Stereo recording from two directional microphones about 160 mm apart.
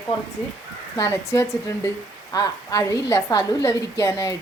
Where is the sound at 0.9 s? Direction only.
20° left (ahead or behind).